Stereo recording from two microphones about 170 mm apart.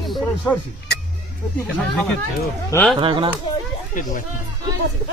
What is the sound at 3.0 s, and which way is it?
Speech, 30° right (ahead or behind).